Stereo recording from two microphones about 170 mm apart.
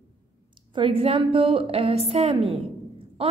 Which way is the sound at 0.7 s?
35° right (ahead or behind).